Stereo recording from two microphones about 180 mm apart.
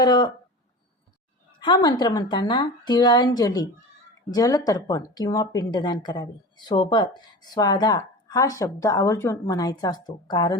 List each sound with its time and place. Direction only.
0.0 s a woman's voice: 25° left (ahead or behind)
1.6 s a woman's voice: 25° left (ahead or behind)